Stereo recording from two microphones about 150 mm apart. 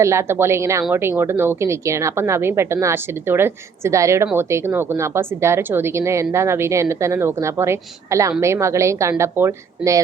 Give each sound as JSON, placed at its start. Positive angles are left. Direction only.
{"t": 0.0, "sound": "a woman's voice", "side_deg": -20}